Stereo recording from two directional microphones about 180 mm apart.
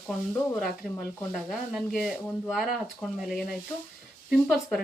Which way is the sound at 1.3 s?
Centre (ahead or behind).